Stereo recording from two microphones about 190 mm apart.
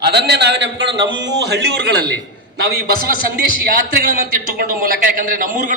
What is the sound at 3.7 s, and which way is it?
A man's voice, 45° right (ahead or behind).